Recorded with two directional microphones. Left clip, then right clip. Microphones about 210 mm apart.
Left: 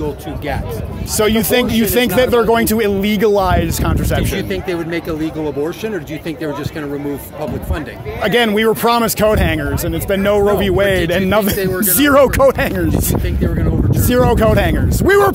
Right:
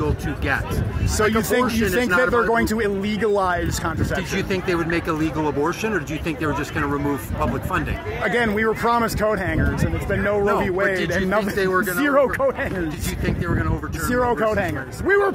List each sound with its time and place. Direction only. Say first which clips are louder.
1.1 s speech: left 6 dB; 25° left (ahead or behind)
4.9 s speech: left 2 dB; 10° left (ahead or behind)
8.2 s a man's voice: left 7 dB; 30° left (ahead or behind)
14.0 s speech: left 7 dB; 40° left (ahead or behind)